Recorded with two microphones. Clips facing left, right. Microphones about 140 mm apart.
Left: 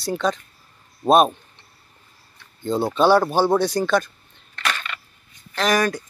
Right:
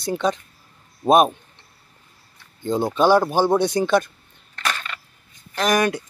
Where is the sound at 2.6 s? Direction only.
15° right (ahead or behind).